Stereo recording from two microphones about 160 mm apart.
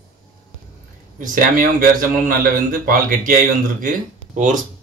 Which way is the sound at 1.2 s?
60° right (ahead or behind).